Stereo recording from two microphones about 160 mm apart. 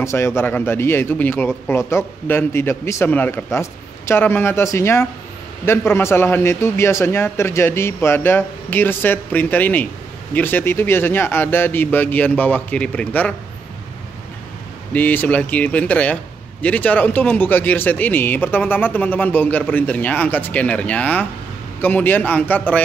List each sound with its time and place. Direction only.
0.0 s speech: 15° left (ahead or behind)
14.9 s speech: 10° left (ahead or behind)